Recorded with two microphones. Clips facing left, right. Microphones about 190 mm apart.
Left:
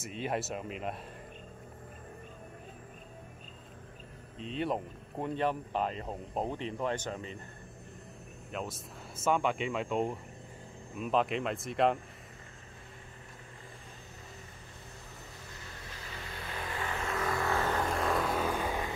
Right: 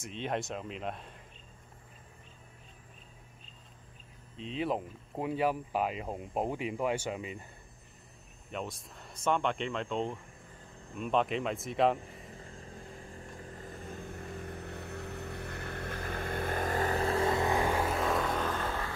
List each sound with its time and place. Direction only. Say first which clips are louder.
0.0 s speech: even; 5° left (ahead or behind)
4.4 s speech: even; centre (ahead or behind)
8.5 s speech: even; centre (ahead or behind)
13.9 s vehicle: right 9 dB; 55° right (ahead or behind); by 18.9 s 15° left (ahead or behind)